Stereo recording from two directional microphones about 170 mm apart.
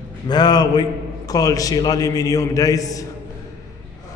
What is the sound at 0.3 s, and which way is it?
A man's voice, 25° left (ahead or behind).